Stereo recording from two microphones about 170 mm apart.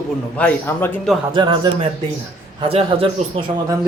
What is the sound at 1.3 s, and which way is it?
Speech, 25° right (ahead or behind).